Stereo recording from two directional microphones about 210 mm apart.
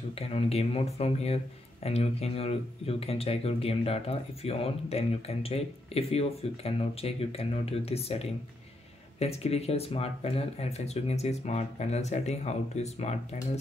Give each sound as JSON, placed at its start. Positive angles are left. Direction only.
{"t": 0.3, "sound": "speech", "side_deg": 30}
{"t": 9.2, "sound": "speech", "side_deg": 30}